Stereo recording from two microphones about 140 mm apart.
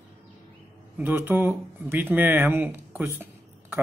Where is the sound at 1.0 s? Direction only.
15° right (ahead or behind).